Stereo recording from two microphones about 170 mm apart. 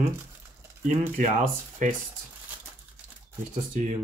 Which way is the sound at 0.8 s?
45° right (ahead or behind).